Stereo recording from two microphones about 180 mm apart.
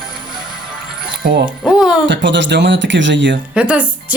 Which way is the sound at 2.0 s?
85° right.